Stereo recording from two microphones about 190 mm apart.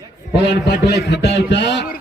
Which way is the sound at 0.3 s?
65° left (ahead or behind).